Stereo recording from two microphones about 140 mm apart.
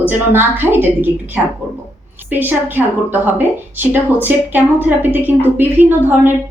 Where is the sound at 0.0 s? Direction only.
15° right (ahead or behind).